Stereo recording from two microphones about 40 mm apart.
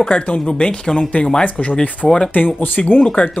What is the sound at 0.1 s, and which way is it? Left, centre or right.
Speech, left.